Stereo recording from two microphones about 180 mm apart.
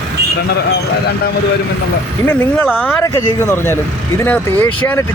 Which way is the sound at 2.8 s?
15° left (ahead or behind).